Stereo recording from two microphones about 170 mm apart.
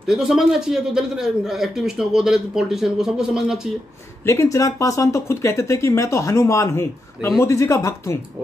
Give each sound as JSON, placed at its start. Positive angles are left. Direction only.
{"t": 0.0, "sound": "a man's voice", "side_deg": -5}
{"t": 4.3, "sound": "speech", "side_deg": 15}